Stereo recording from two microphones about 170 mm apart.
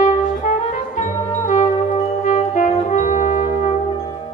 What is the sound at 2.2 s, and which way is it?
Brass instrument, 50° left (ahead or behind).